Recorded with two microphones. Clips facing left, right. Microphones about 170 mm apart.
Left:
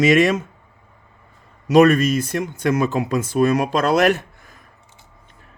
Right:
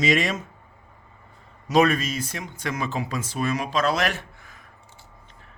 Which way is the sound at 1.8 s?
55° left (ahead or behind).